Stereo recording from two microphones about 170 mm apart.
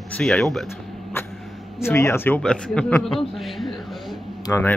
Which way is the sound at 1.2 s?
15° left (ahead or behind).